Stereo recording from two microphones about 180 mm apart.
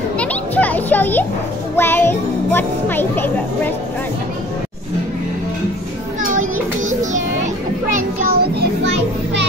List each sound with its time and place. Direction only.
0.2 s music: 10° left (ahead or behind)
1.8 s speech: 10° left (ahead or behind)
7.9 s music: 60° right (ahead or behind); by 9.5 s 75° right (ahead or behind)